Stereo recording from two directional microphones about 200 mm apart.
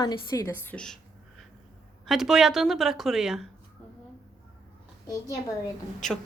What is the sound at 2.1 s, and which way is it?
A woman's voice, centre (ahead or behind).